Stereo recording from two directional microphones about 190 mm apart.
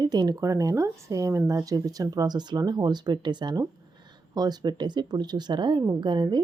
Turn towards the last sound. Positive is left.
turn(degrees=-25)  # may be behind; listen again after turning